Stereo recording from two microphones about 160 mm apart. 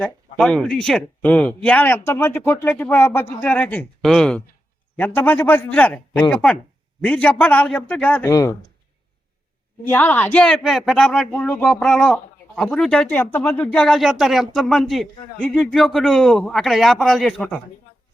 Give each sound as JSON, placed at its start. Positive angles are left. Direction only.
{"t": 0.0, "sound": "speech", "side_deg": 5}
{"t": 8.3, "sound": "speech", "side_deg": 20}
{"t": 9.9, "sound": "speech", "side_deg": 10}